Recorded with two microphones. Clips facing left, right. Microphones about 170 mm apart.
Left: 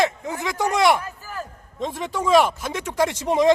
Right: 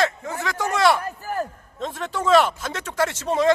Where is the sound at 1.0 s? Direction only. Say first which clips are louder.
Right 6 dB; 55° right (ahead or behind).